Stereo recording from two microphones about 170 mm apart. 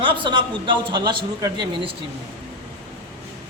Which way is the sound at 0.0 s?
30° right (ahead or behind).